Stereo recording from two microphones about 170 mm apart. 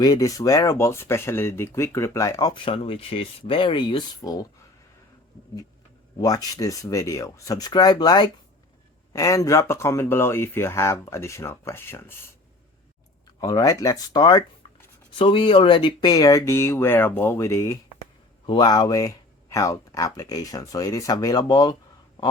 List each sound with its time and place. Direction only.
0.0 s speech: 20° left (ahead or behind)
6.1 s speech: 20° left (ahead or behind)
13.4 s speech: 20° left (ahead or behind)